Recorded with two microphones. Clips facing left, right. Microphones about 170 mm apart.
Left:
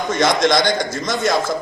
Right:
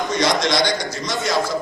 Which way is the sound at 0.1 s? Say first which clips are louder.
Left 5 dB; 50° left (ahead or behind).